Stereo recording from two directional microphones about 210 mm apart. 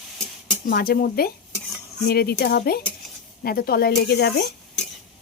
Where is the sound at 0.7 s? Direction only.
45° left (ahead or behind).